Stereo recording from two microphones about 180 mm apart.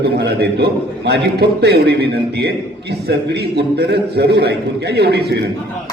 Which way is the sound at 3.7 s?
60° right (ahead or behind).